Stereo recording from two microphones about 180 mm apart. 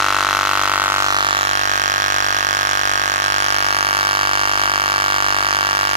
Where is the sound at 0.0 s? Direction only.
Centre (ahead or behind).